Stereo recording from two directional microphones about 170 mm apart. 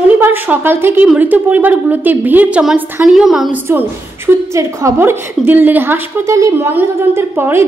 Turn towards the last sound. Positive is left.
turn(degrees=-15)  # may be behind; listen again after turning